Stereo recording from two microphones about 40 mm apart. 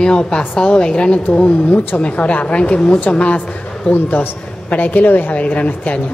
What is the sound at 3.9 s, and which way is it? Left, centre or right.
A man's voice, left.